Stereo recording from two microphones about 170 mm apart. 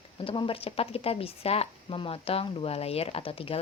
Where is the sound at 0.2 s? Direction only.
30° left (ahead or behind).